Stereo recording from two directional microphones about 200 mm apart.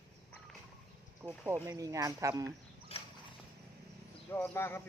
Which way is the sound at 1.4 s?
15° right (ahead or behind).